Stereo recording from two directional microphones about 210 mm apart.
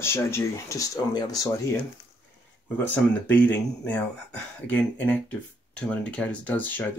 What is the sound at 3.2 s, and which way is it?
Speech, 10° left (ahead or behind).